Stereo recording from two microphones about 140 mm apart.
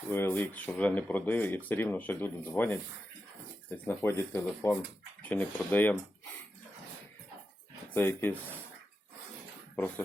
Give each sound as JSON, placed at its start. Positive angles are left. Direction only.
{"t": 0.1, "sound": "speech", "side_deg": 15}
{"t": 7.9, "sound": "speech", "side_deg": 15}